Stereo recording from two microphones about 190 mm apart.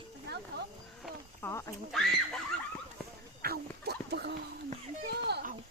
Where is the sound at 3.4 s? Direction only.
55° right (ahead or behind).